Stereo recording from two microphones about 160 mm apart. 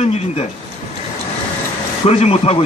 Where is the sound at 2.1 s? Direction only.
40° left (ahead or behind).